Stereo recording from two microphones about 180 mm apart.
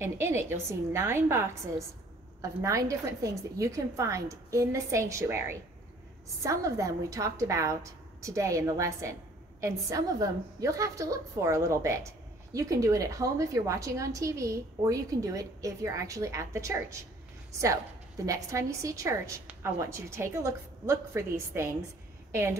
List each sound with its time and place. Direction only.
0.0 s a woman's voice: 15° right (ahead or behind)
2.6 s a woman's voice: 15° right (ahead or behind)